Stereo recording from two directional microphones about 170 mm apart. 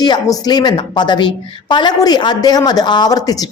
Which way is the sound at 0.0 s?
25° left (ahead or behind).